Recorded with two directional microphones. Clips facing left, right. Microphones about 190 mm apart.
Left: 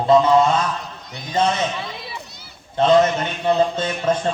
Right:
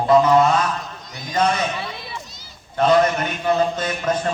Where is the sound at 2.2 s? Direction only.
60° left (ahead or behind).